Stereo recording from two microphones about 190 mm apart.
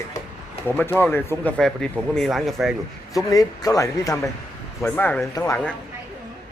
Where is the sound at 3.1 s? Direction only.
20° left (ahead or behind).